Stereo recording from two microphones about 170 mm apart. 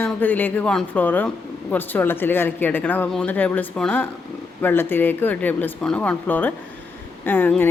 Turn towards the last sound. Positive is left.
turn(degrees=10)  # may be behind; listen again after turning